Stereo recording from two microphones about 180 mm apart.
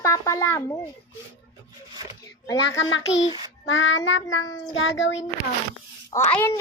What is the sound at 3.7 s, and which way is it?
Child singing, 90° left.